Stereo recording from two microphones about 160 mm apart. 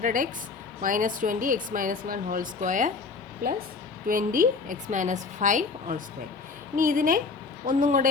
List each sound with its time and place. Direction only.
0.0 s speech: 55° right (ahead or behind)
4.1 s a woman's voice: 60° right (ahead or behind)